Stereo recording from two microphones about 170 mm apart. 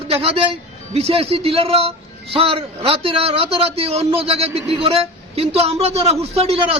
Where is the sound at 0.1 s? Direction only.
35° right (ahead or behind).